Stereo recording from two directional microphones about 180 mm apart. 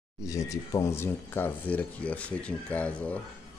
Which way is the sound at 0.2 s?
20° left (ahead or behind).